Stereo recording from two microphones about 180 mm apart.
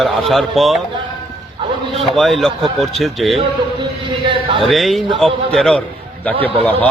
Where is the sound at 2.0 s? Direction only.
Centre (ahead or behind).